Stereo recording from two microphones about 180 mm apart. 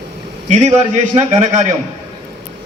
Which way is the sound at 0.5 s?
40° right (ahead or behind).